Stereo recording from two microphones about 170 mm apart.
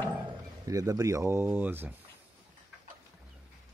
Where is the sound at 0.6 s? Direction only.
20° right (ahead or behind).